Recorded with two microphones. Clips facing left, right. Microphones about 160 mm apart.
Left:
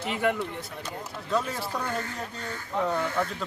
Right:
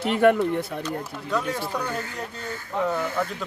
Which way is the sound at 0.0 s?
65° right (ahead or behind).